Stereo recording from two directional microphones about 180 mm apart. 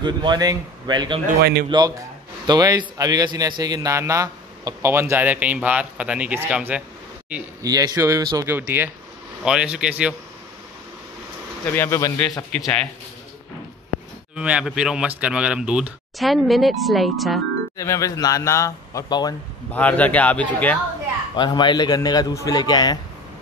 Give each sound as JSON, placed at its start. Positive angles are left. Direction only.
{"t": 0.0, "sound": "speech", "side_deg": -25}
{"t": 1.4, "sound": "speech", "side_deg": -65}
{"t": 1.7, "sound": "a man's voice", "side_deg": -20}
{"t": 7.6, "sound": "speech", "side_deg": -20}
{"t": 11.6, "sound": "speech", "side_deg": 10}
{"t": 12.5, "sound": "speech", "side_deg": 0}
{"t": 14.3, "sound": "speech", "side_deg": -5}
{"t": 17.7, "sound": "speech", "side_deg": 15}
{"t": 19.7, "sound": "speech", "side_deg": 10}
{"t": 21.4, "sound": "a man's voice", "side_deg": 25}